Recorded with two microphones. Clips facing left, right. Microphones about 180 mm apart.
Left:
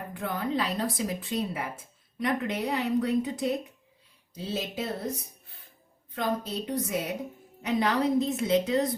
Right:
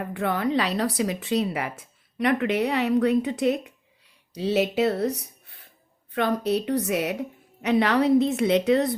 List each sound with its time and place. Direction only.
0.1 s speech: 75° right (ahead or behind)